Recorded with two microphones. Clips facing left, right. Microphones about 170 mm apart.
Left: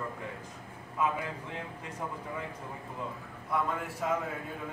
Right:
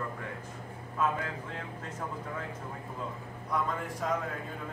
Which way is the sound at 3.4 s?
5° left (ahead or behind).